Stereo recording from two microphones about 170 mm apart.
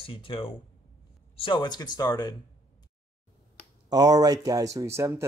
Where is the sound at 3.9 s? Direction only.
25° right (ahead or behind).